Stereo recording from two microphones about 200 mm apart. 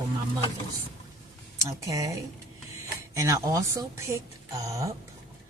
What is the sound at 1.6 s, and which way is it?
Speech, 15° right (ahead or behind).